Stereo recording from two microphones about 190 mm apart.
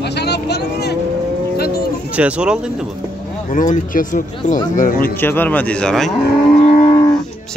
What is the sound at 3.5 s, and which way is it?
Speech, 45° left (ahead or behind).